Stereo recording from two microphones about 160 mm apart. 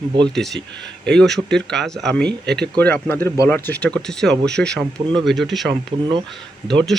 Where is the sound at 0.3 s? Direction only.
Centre (ahead or behind).